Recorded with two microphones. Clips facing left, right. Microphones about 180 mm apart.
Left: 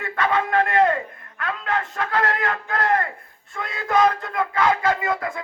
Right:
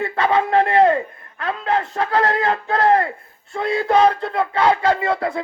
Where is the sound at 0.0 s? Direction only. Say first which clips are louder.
Right 4 dB; 30° right (ahead or behind).